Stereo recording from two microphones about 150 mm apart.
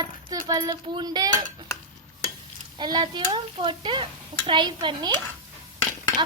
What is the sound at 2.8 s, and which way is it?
Speech, 30° right (ahead or behind).